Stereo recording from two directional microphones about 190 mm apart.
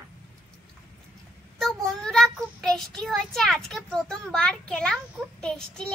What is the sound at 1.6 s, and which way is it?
Child singing, centre (ahead or behind).